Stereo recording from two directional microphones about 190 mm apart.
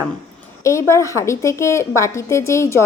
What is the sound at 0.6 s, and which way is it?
A woman's voice, 15° left (ahead or behind).